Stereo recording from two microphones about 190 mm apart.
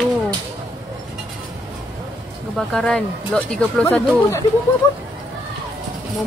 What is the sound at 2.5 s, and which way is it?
Speech, 5° left (ahead or behind).